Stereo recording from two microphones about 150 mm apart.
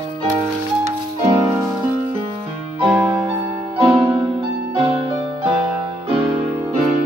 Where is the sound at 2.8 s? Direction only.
35° right (ahead or behind).